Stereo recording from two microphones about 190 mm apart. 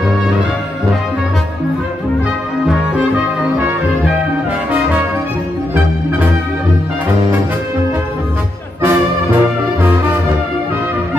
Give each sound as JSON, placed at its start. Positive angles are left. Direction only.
{"t": 3.5, "sound": "music", "side_deg": -10}
{"t": 8.8, "sound": "music", "side_deg": -10}